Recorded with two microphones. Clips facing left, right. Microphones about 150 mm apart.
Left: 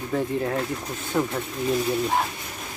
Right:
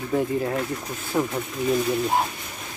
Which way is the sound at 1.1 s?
5° right (ahead or behind).